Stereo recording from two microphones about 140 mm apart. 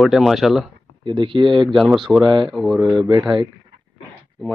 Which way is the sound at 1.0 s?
35° right (ahead or behind).